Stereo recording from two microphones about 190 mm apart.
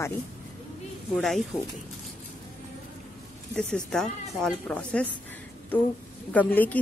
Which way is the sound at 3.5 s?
5° left (ahead or behind).